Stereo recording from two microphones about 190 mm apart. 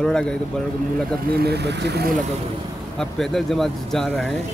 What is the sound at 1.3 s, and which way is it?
Speech, 55° right (ahead or behind).